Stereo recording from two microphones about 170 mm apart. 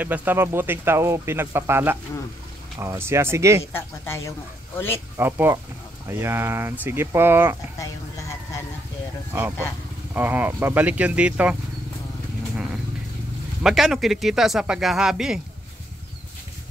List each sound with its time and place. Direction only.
0.0 s speech: 10° right (ahead or behind)
3.7 s speech: 15° left (ahead or behind)
5.1 s speech: 15° right (ahead or behind)
10.1 s speech: 10° right (ahead or behind)
13.6 s speech: centre (ahead or behind)